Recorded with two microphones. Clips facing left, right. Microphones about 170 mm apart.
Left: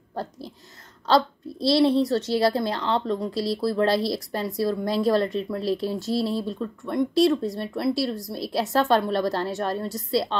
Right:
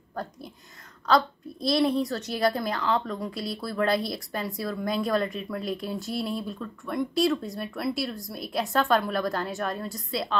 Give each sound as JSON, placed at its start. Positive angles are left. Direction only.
{"t": 0.1, "sound": "a child's voice", "side_deg": 30}
{"t": 7.2, "sound": "speech", "side_deg": 0}
{"t": 7.5, "sound": "a child's voice", "side_deg": 30}